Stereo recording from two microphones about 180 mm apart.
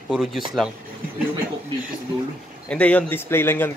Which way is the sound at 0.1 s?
Centre (ahead or behind).